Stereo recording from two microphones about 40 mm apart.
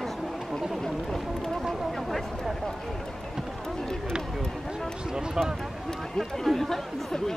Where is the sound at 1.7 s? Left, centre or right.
Centre.